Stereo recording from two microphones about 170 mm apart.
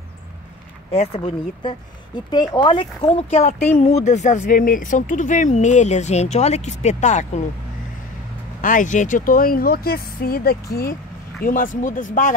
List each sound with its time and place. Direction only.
0.9 s speech: 35° left (ahead or behind)
8.5 s speech: 50° left (ahead or behind)